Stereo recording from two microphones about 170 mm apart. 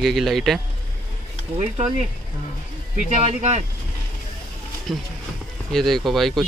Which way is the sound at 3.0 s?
40° right (ahead or behind).